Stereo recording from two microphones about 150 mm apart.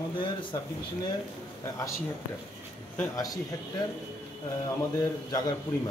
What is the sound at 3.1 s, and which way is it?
Speech, 25° left (ahead or behind).